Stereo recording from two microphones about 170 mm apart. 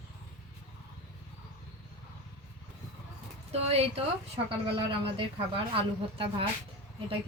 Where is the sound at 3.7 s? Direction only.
35° right (ahead or behind).